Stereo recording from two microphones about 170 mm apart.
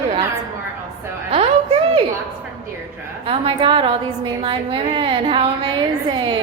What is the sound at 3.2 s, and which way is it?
A woman's voice, 30° right (ahead or behind).